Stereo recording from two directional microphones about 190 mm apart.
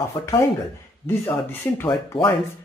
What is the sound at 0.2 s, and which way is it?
Speech, 25° left (ahead or behind).